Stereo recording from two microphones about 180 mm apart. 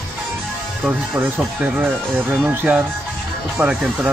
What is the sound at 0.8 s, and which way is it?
Speech, 5° right (ahead or behind).